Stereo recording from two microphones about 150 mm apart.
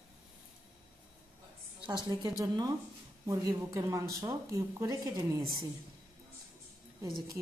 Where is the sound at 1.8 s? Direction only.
30° right (ahead or behind).